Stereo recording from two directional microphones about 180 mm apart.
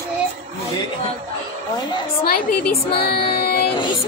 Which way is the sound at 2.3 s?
60° left (ahead or behind).